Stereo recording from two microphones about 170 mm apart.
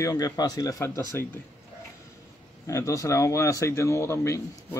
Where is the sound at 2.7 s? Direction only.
20° left (ahead or behind).